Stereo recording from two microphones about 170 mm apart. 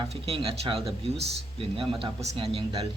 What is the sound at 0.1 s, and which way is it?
Speech, 35° right (ahead or behind).